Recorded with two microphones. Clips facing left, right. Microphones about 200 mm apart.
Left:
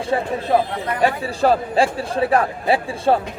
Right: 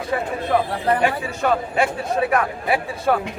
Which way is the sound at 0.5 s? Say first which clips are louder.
Even; 30° left (ahead or behind).